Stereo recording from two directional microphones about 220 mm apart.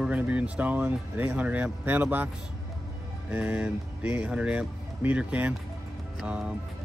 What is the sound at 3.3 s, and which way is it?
Speech, 5° right (ahead or behind).